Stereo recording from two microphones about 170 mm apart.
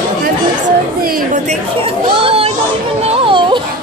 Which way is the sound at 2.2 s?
35° right (ahead or behind).